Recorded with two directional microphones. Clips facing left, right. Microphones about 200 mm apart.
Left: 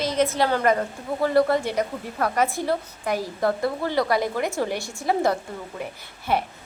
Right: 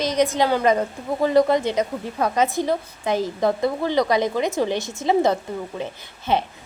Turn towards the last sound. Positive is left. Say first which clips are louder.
# right 2 dB
turn(degrees=-20)  # may be behind; listen again after turning